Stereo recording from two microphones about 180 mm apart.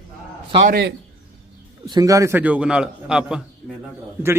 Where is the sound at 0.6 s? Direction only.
60° right (ahead or behind).